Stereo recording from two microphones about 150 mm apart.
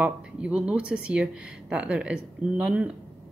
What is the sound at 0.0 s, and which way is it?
A woman's voice, 10° right (ahead or behind).